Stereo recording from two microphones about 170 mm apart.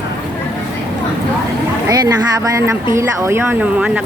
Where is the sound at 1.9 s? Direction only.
20° right (ahead or behind).